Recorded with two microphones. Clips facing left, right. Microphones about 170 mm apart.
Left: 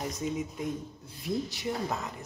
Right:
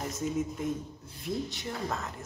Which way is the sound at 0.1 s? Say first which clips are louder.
Right 2 dB; centre (ahead or behind).